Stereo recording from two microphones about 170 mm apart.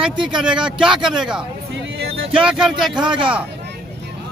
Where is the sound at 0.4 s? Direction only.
5° right (ahead or behind).